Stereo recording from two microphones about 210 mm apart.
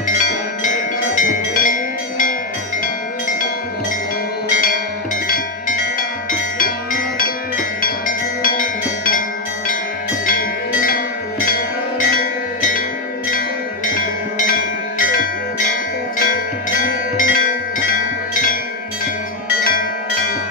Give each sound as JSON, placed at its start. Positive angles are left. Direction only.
{"t": 0.7, "sound": "tubular bells", "side_deg": 35}
{"t": 5.3, "sound": "music", "side_deg": 40}
{"t": 7.2, "sound": "music", "side_deg": 40}
{"t": 10.2, "sound": "music", "side_deg": 45}
{"t": 13.9, "sound": "tubular bells", "side_deg": 45}
{"t": 16.7, "sound": "music", "side_deg": 40}
{"t": 17.9, "sound": "wind chime", "side_deg": 40}